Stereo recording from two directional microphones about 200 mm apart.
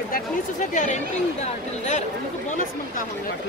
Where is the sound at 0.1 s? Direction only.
40° left (ahead or behind).